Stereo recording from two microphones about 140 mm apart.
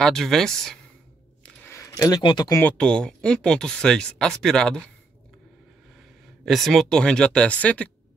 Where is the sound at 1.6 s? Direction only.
20° left (ahead or behind).